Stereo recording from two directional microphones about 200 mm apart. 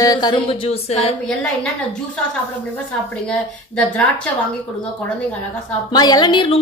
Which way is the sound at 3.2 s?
5° left (ahead or behind).